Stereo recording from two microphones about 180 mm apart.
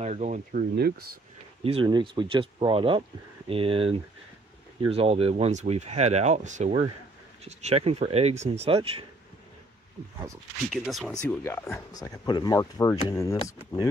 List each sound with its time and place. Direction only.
0.0 s speech: 40° right (ahead or behind); by 0.9 s 55° right (ahead or behind)
1.6 s speech: 30° right (ahead or behind)
10.7 s speech: centre (ahead or behind)
11.4 s speech: 15° left (ahead or behind)